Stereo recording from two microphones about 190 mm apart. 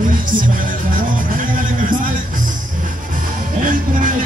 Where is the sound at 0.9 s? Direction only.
45° right (ahead or behind).